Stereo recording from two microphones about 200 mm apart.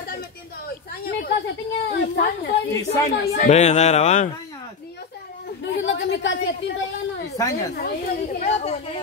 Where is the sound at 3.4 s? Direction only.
35° left (ahead or behind).